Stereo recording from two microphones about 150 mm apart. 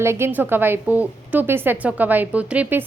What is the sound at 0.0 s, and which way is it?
A woman's voice, 15° right (ahead or behind).